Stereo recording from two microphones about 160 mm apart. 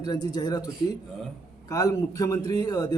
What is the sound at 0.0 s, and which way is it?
Speech, 25° left (ahead or behind).